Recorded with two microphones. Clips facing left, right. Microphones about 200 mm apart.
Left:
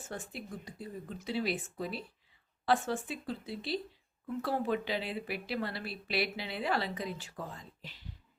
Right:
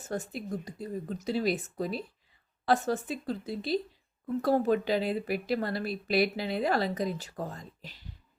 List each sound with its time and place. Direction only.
0.0 s speech: 40° right (ahead or behind)